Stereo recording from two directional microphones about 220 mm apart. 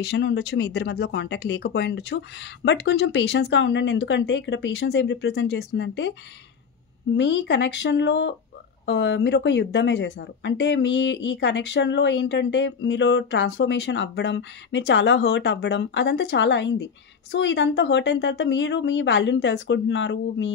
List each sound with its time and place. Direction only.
0.0 s speech: 50° left (ahead or behind)
7.2 s speech: 55° left (ahead or behind)